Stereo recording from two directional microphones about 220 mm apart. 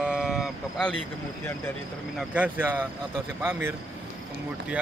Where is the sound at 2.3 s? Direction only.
10° right (ahead or behind).